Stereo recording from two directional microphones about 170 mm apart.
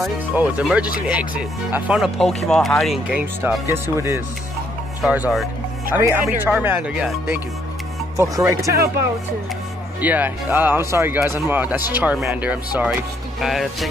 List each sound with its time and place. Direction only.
0.0 s speech: 5° right (ahead or behind)
3.7 s speech: 15° right (ahead or behind)
5.0 s music: 5° right (ahead or behind)
5.9 s speech: 10° right (ahead or behind)
8.2 s speech: 20° right (ahead or behind)
9.9 s speech: 10° right (ahead or behind)